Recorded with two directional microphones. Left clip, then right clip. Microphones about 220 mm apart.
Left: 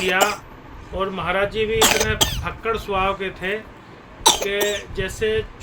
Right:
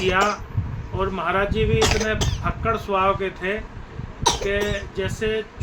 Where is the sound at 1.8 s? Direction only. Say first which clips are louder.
Left 7 dB; 60° left (ahead or behind).